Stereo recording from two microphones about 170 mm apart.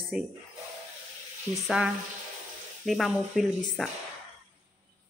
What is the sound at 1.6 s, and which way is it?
Speech, 5° right (ahead or behind).